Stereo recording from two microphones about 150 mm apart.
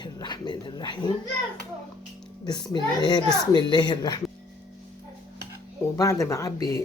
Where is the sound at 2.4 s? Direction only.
30° left (ahead or behind).